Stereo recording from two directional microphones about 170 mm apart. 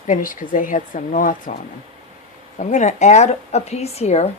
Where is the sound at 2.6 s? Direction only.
45° left (ahead or behind).